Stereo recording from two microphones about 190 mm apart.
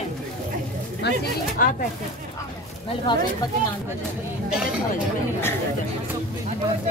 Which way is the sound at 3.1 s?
25° left (ahead or behind).